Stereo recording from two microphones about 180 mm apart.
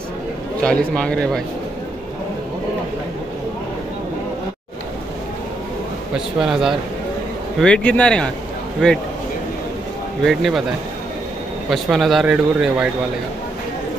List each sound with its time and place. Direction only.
0.6 s speech: 5° left (ahead or behind)
6.1 s speech: centre (ahead or behind)
10.2 s speech: centre (ahead or behind)
11.7 s speech: centre (ahead or behind)